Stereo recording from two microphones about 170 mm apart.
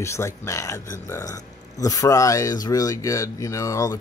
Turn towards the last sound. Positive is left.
turn(degrees=20)  # may be behind; listen again after turning